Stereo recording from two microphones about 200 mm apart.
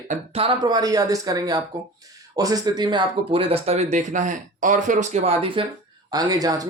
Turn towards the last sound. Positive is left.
turn(degrees=-20)  # may be behind; listen again after turning